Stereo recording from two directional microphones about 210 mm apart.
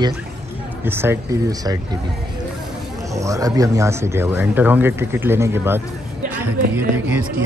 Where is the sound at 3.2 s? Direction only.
15° right (ahead or behind).